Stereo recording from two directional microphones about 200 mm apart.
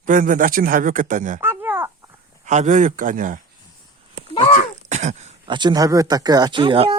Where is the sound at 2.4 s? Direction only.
40° right (ahead or behind).